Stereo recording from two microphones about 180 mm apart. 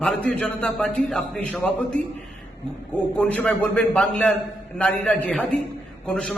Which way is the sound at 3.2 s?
5° left (ahead or behind).